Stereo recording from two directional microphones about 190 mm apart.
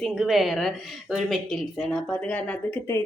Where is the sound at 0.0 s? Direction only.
Centre (ahead or behind).